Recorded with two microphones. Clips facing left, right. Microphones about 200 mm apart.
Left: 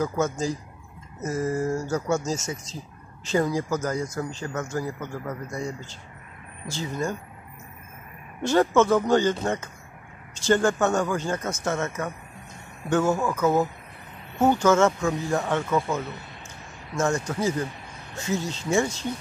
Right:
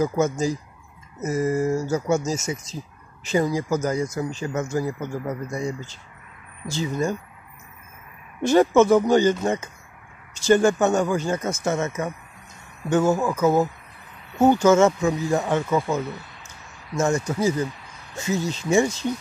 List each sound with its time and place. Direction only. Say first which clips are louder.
0.0 s speech: right 4 dB; 10° right (ahead or behind)
6.7 s speech: right 4 dB; 15° right (ahead or behind)
8.4 s speech: right 4 dB; 15° right (ahead or behind)